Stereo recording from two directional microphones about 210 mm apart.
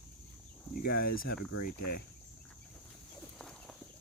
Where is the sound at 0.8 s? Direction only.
45° left (ahead or behind).